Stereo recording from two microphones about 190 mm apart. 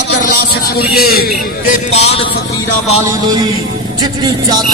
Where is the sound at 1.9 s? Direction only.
35° left (ahead or behind).